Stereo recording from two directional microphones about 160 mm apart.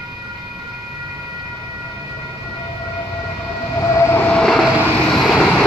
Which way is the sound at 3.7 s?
20° left (ahead or behind).